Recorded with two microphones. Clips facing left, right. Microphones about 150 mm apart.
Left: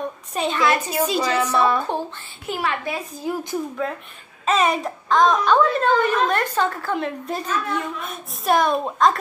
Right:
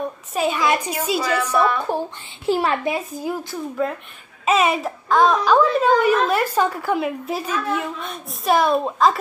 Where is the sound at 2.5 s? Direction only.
30° right (ahead or behind).